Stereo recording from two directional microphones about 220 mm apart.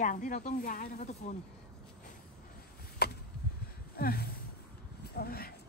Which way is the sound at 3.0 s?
45° left (ahead or behind).